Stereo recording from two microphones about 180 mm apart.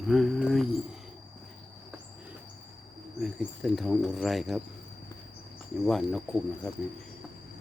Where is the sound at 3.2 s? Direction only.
Centre (ahead or behind).